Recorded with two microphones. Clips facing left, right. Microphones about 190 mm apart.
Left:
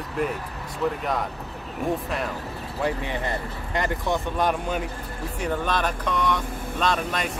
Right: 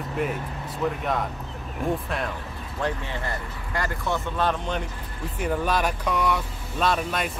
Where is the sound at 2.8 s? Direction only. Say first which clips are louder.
Left 2 dB; 15° left (ahead or behind).